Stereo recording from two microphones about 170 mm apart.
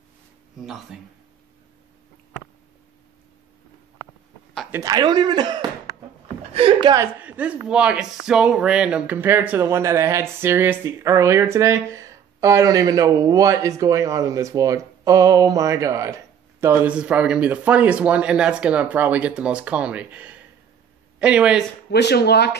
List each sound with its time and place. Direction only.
0.9 s speech: centre (ahead or behind)
4.6 s speech: 20° right (ahead or behind)
6.5 s a sound: 30° right (ahead or behind)
7.0 s speech: 10° right (ahead or behind)
21.9 s speech: 80° left